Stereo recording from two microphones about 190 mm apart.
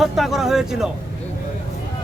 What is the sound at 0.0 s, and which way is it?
Speech, centre (ahead or behind).